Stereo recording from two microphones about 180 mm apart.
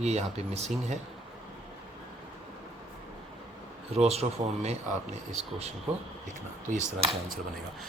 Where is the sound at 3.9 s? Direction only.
35° right (ahead or behind).